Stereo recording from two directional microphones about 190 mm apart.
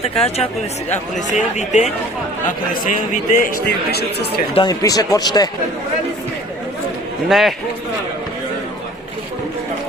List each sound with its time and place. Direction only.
1.1 s speech: 40° left (ahead or behind)
4.5 s speech: 20° left (ahead or behind)
7.3 s a man's voice: centre (ahead or behind)